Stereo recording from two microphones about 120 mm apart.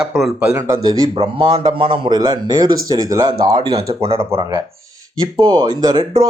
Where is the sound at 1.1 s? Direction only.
50° right (ahead or behind).